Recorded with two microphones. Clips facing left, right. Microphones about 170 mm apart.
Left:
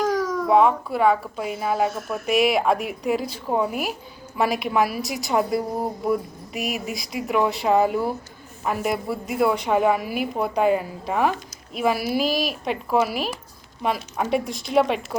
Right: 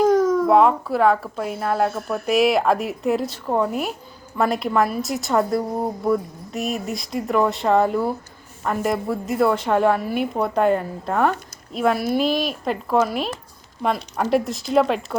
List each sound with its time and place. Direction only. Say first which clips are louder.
0.0 s baby cry: right 7 dB; 25° right (ahead or behind)
0.4 s a woman's voice: right 2 dB; centre (ahead or behind)